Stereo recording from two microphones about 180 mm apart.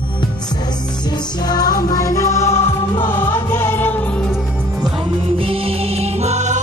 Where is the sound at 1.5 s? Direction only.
20° left (ahead or behind).